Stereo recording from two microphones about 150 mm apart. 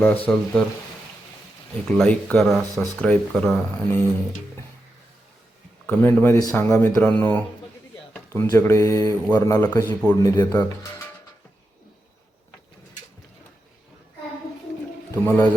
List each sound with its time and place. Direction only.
0.0 s speech: 10° left (ahead or behind)
1.9 s speech: 5° left (ahead or behind)
5.8 s speech: 10° left (ahead or behind)
8.1 s a sound: 15° left (ahead or behind)
8.4 s mantra: 20° left (ahead or behind)
10.1 s speech: 20° left (ahead or behind)
15.1 s a man's voice: 15° left (ahead or behind)